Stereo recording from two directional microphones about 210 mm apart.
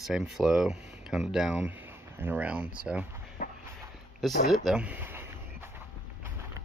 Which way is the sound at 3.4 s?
40° left (ahead or behind).